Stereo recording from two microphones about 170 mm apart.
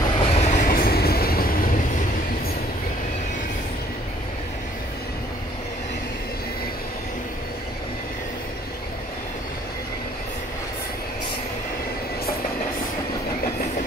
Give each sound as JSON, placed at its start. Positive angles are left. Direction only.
{"t": 0.2, "sound": "train", "side_deg": 40}